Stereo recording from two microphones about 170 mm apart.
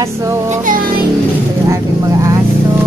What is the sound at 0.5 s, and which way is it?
Speech, 50° right (ahead or behind).